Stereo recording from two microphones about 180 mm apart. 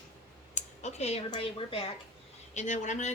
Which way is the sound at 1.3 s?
30° left (ahead or behind).